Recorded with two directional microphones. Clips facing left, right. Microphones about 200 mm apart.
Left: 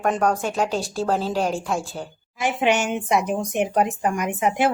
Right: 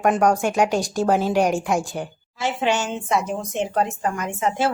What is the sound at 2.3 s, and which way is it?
A woman's voice, 15° left (ahead or behind).